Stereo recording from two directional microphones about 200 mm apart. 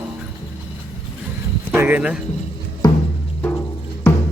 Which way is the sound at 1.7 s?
10° right (ahead or behind).